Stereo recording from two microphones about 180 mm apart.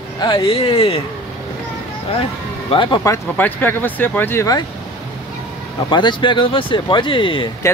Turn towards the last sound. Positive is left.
turn(degrees=30)  # may be behind; listen again after turning